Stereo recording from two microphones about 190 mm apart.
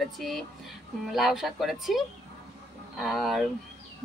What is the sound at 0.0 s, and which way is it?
Speech, centre (ahead or behind).